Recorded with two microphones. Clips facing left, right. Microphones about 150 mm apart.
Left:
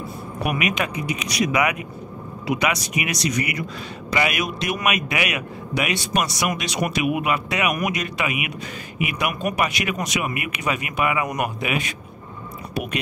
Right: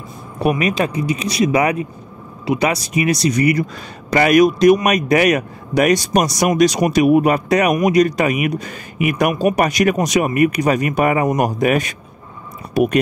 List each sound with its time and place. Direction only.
0.4 s a man's voice: 30° right (ahead or behind)